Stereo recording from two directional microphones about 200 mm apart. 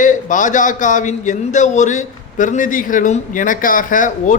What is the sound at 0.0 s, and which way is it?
Speech, 40° left (ahead or behind).